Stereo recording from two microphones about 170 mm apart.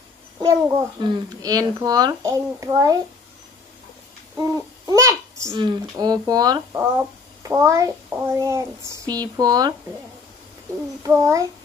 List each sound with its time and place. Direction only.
0.4 s a child's voice: 20° right (ahead or behind)
4.4 s a child's voice: 20° right (ahead or behind)